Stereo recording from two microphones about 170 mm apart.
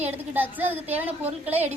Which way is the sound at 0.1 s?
10° right (ahead or behind).